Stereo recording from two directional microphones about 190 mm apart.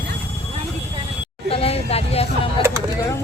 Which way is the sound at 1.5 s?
30° left (ahead or behind).